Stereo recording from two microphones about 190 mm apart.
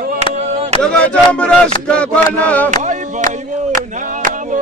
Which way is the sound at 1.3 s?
5° left (ahead or behind).